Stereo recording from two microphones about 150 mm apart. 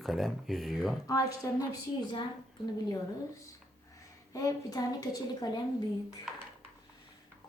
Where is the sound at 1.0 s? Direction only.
25° left (ahead or behind).